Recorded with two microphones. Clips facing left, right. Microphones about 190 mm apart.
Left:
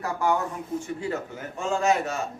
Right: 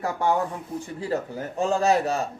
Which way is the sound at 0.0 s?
25° right (ahead or behind).